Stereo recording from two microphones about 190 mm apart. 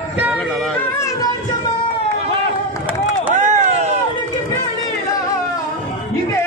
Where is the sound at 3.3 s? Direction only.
40° right (ahead or behind).